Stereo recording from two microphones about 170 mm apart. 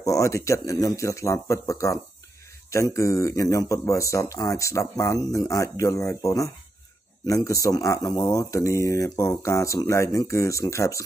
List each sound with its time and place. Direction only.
0.0 s speech: 20° left (ahead or behind)